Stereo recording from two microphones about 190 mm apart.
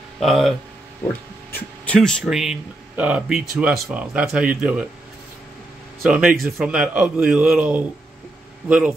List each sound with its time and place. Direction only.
0.2 s speech: centre (ahead or behind)
1.0 s a sound: 5° left (ahead or behind)
1.5 s speech: 5° left (ahead or behind)
6.0 s speech: 5° right (ahead or behind)